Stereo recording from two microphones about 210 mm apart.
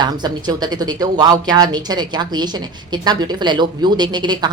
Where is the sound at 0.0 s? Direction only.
20° right (ahead or behind).